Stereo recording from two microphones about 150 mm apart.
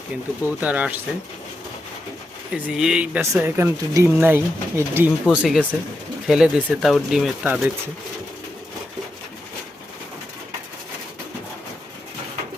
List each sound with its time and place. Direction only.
0.4 s speech: 10° right (ahead or behind)
2.5 s speech: 10° right (ahead or behind)